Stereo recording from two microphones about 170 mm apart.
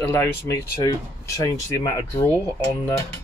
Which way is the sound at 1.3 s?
20° left (ahead or behind).